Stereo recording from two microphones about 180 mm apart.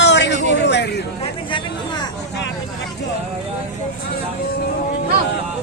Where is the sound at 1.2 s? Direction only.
25° left (ahead or behind).